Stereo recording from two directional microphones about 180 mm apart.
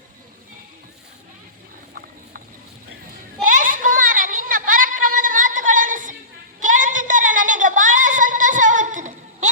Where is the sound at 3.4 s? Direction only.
50° right (ahead or behind).